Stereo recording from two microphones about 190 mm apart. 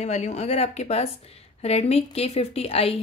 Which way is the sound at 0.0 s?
35° left (ahead or behind).